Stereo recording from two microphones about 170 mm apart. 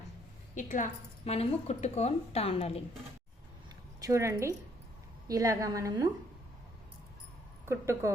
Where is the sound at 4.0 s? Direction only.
20° right (ahead or behind).